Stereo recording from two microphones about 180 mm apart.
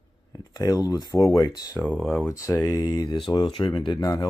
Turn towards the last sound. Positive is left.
turn(degrees=20)  # may be behind; listen again after turning